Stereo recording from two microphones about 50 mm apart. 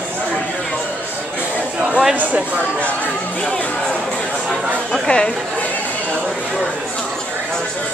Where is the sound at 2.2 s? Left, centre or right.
Right.